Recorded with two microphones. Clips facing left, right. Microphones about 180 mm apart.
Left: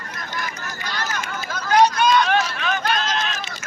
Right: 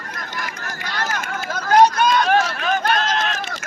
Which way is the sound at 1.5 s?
50° right (ahead or behind).